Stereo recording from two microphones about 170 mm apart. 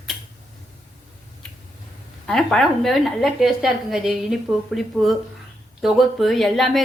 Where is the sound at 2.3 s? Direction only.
5° left (ahead or behind).